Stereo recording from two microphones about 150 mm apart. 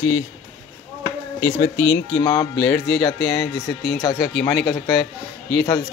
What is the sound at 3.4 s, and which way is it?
Speech, 90° left.